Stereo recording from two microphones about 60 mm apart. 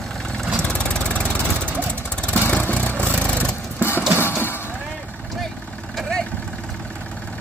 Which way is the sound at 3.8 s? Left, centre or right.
Left.